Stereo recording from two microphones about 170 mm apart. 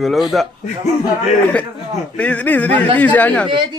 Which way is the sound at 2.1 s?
5° left (ahead or behind).